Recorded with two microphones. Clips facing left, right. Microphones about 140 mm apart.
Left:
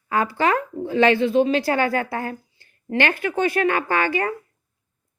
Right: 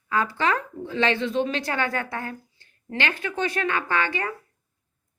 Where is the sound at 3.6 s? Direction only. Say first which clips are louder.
Left 3 dB; 45° left (ahead or behind).